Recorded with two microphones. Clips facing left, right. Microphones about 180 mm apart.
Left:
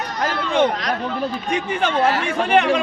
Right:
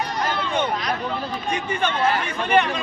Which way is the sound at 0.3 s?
90° left.